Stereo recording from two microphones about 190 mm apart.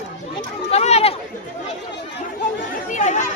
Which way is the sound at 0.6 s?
35° left (ahead or behind).